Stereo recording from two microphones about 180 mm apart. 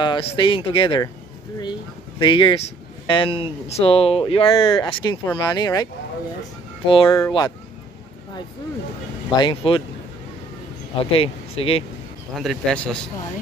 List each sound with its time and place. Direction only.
0.0 s speech: 25° left (ahead or behind)
9.4 s speech: 25° left (ahead or behind)
11.0 s speech: 30° left (ahead or behind)
12.4 s speech: centre (ahead or behind)